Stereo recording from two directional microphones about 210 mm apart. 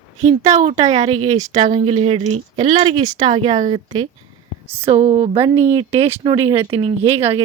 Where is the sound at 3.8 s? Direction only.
20° right (ahead or behind).